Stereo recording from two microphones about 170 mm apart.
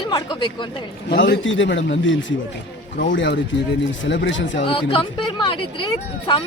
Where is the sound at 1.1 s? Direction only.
80° left.